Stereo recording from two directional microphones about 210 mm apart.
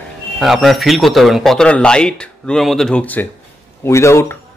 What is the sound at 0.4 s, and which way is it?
A man's voice, centre (ahead or behind).